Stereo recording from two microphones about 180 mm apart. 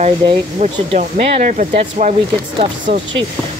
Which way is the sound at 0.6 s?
40° right (ahead or behind).